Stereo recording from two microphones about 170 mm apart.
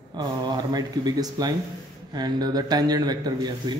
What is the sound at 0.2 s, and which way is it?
Speech, 25° right (ahead or behind).